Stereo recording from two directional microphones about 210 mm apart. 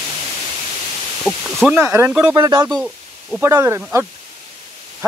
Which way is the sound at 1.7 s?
10° right (ahead or behind).